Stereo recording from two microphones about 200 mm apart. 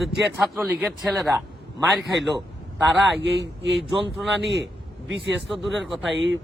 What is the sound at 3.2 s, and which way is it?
Speech, 65° right (ahead or behind).